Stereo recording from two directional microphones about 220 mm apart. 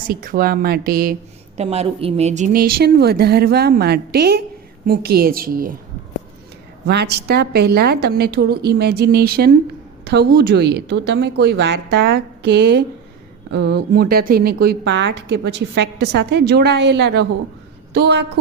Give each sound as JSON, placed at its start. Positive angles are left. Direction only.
{"t": 0.1, "sound": "speech", "side_deg": -40}
{"t": 1.5, "sound": "speech", "side_deg": -30}
{"t": 6.8, "sound": "speech", "side_deg": -50}